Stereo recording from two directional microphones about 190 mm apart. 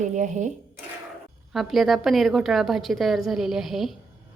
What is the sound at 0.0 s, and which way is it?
Speech, 40° right (ahead or behind).